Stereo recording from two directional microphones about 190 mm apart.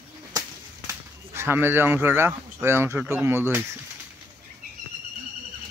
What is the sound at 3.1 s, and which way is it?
Speech, 10° right (ahead or behind).